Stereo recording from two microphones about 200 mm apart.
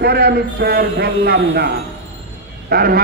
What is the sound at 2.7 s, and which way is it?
Speech, 50° right (ahead or behind).